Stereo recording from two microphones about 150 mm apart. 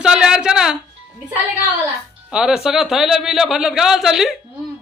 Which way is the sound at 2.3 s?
5° right (ahead or behind).